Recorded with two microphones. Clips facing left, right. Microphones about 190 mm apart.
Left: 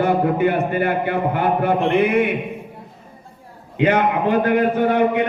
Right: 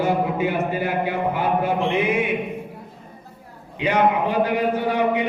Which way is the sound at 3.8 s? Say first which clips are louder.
Left 2 dB; 55° left (ahead or behind).